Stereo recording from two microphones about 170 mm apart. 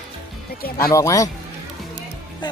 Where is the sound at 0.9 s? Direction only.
20° left (ahead or behind).